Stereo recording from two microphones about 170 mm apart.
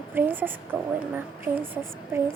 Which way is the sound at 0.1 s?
10° right (ahead or behind).